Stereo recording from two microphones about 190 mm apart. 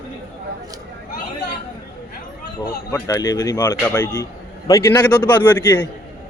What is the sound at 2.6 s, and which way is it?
A man's voice, 20° left (ahead or behind).